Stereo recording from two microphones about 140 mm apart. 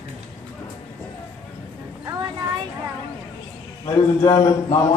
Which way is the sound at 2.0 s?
30° right (ahead or behind).